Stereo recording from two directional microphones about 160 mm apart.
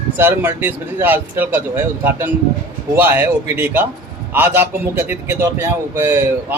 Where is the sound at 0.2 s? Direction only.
10° right (ahead or behind).